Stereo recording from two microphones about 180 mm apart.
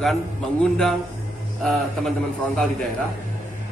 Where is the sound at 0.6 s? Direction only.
Centre (ahead or behind).